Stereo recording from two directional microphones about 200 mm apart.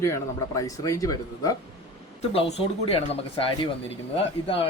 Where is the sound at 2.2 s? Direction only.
30° left (ahead or behind).